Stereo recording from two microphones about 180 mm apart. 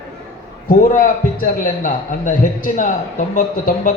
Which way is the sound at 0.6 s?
55° left (ahead or behind).